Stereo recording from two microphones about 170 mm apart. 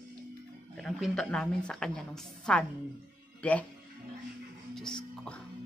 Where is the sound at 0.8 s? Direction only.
Centre (ahead or behind).